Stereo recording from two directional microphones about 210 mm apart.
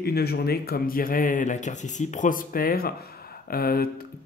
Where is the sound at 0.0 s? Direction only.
50° left (ahead or behind).